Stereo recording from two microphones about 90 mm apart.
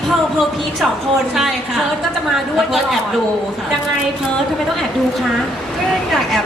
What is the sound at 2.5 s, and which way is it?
Speech, 5° right (ahead or behind).